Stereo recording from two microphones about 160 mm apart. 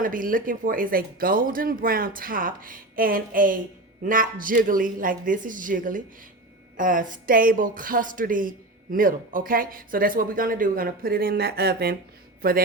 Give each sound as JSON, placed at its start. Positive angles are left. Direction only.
{"t": 0.0, "sound": "speech", "side_deg": -60}
{"t": 12.4, "sound": "speech", "side_deg": -65}